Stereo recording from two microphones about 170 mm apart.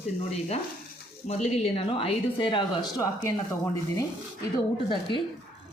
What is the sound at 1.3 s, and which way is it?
Speech, 40° left (ahead or behind).